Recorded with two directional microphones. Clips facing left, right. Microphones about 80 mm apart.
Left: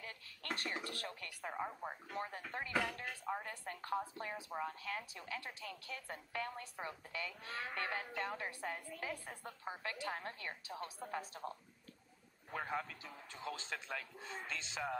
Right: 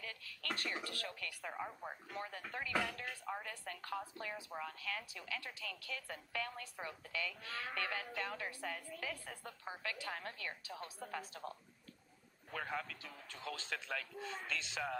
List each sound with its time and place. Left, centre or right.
0.0 s speech: left
1.5 s speech: centre
2.1 s speech: left